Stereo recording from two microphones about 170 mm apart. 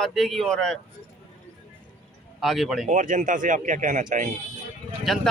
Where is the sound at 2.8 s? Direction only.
50° right (ahead or behind).